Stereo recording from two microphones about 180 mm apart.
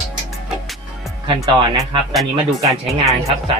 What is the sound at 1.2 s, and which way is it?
Speech, 25° right (ahead or behind).